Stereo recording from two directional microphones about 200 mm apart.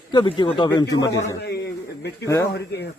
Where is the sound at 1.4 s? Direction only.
55° left (ahead or behind).